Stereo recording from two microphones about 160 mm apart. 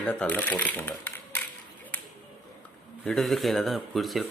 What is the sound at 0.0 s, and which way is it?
Speech, 5° left (ahead or behind).